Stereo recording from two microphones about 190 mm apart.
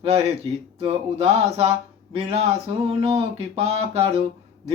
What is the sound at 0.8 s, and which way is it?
Mantra, 30° right (ahead or behind).